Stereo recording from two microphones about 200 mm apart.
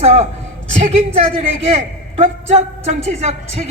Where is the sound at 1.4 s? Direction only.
35° right (ahead or behind).